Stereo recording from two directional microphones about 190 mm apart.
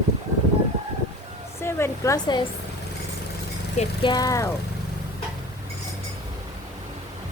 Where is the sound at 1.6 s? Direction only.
15° left (ahead or behind).